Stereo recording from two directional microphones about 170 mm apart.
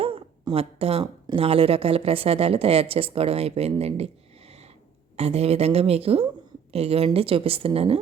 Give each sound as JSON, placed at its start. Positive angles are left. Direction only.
{"t": 0.0, "sound": "a sound", "side_deg": -35}
{"t": 1.0, "sound": "speech", "side_deg": -30}
{"t": 5.1, "sound": "speech", "side_deg": -40}